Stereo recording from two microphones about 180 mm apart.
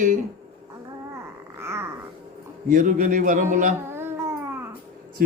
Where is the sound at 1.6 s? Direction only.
15° right (ahead or behind).